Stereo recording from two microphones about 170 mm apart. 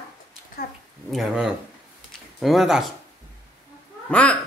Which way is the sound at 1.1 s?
Centre (ahead or behind).